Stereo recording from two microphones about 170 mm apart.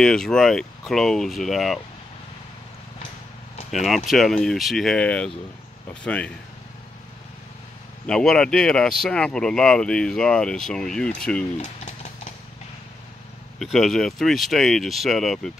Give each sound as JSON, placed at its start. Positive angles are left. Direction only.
{"t": 0.0, "sound": "speech", "side_deg": 5}
{"t": 3.7, "sound": "speech", "side_deg": 0}
{"t": 8.1, "sound": "speech", "side_deg": 5}
{"t": 11.6, "sound": "a sound", "side_deg": 45}
{"t": 13.6, "sound": "speech", "side_deg": 0}